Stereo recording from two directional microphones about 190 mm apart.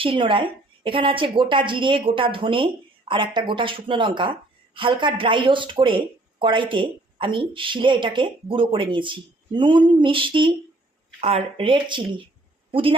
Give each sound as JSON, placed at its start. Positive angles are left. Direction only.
{"t": 0.0, "sound": "a woman's voice", "side_deg": -25}